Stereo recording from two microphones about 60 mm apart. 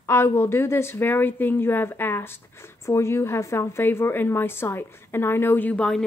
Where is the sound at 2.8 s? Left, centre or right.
Left.